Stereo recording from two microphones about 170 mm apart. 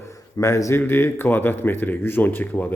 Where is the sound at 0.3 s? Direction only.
15° left (ahead or behind).